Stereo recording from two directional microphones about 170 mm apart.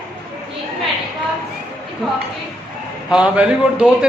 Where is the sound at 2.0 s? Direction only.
Centre (ahead or behind).